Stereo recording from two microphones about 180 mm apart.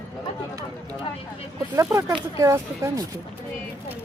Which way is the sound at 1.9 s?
20° right (ahead or behind).